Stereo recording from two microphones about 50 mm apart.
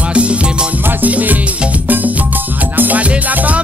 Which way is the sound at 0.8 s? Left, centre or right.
Right.